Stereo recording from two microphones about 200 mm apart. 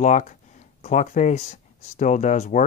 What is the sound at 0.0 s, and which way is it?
Speech, 35° left (ahead or behind).